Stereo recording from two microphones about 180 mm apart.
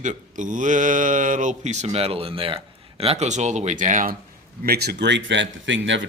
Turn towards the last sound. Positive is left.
turn(degrees=-90)